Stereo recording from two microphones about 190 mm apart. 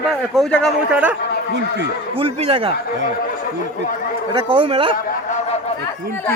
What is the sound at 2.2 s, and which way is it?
Speech, 30° right (ahead or behind).